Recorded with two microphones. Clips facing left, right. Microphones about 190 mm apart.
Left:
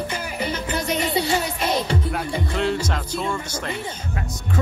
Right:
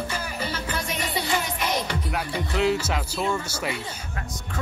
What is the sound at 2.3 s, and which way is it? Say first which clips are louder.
Speech: right 1 dB; 5° right (ahead or behind).